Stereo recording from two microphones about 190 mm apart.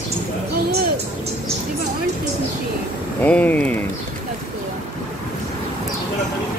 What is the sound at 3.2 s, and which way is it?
Speech, 10° left (ahead or behind).